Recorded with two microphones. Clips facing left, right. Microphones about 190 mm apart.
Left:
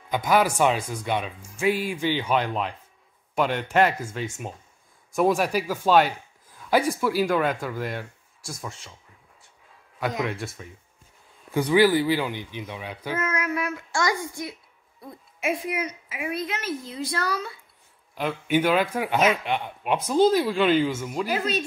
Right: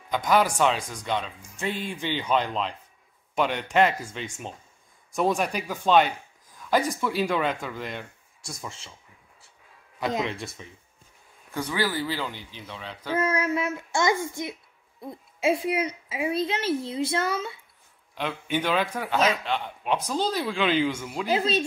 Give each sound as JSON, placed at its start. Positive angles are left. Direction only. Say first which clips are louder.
{"t": 0.1, "sound": "speech", "louder": "left 1 dB", "side_deg": 5}
{"t": 3.4, "sound": "speech", "louder": "left 1 dB", "side_deg": -15}
{"t": 3.8, "sound": "speech", "louder": "left 1 dB", "side_deg": 5}
{"t": 10.0, "sound": "speech", "louder": "even", "side_deg": -25}
{"t": 10.3, "sound": "speech", "louder": "left 2 dB", "side_deg": 0}
{"t": 11.5, "sound": "speech", "louder": "left 9 dB", "side_deg": 15}
{"t": 13.2, "sound": "a child's voice", "louder": "right 3 dB", "side_deg": -30}
{"t": 18.1, "sound": "speech", "louder": "left 5 dB", "side_deg": 10}
{"t": 21.3, "sound": "speech", "louder": "right 4 dB", "side_deg": -25}